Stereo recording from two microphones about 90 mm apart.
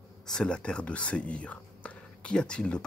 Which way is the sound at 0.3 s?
10° left (ahead or behind).